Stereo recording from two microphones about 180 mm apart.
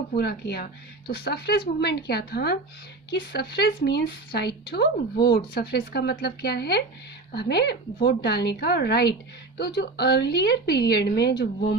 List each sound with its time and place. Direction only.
0.2 s speech: 60° left (ahead or behind)